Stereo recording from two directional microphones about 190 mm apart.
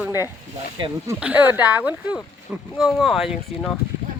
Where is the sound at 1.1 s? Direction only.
10° right (ahead or behind).